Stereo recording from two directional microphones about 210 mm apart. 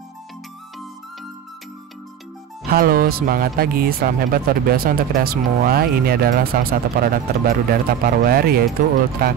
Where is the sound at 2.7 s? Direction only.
45° right (ahead or behind).